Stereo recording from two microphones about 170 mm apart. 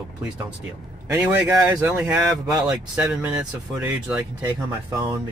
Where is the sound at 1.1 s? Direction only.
10° right (ahead or behind).